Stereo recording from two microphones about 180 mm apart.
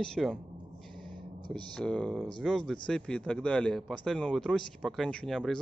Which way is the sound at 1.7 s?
5° left (ahead or behind).